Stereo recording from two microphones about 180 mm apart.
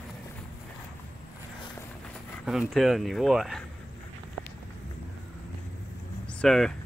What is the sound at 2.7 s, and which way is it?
Speech, centre (ahead or behind).